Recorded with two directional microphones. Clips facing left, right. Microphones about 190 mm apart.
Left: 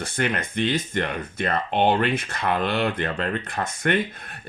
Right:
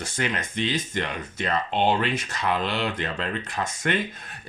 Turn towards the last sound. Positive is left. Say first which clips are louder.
# left 3 dB
turn(degrees=55)  # may be behind; listen again after turning